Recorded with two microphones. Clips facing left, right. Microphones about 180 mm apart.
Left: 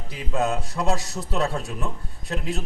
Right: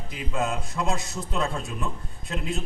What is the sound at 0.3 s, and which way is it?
A man's voice, 40° left (ahead or behind).